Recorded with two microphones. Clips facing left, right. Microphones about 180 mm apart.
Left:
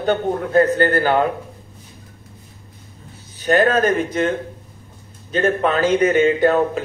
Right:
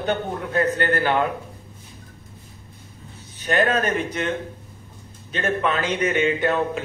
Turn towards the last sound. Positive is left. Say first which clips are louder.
# left 6 dB
turn(degrees=40)  # may be behind; listen again after turning